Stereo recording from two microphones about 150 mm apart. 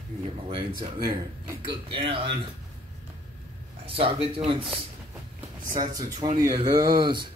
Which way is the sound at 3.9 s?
35° right (ahead or behind).